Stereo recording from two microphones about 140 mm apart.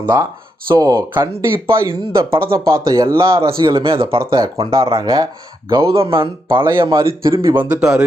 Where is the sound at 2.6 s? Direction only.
20° right (ahead or behind).